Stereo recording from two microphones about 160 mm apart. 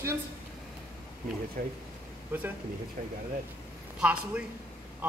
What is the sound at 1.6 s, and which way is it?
Speech, 60° right (ahead or behind).